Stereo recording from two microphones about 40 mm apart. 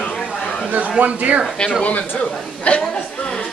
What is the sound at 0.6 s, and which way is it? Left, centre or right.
Speech, right.